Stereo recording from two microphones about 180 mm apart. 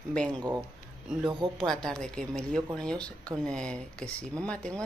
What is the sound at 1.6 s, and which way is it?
Speech, 5° left (ahead or behind).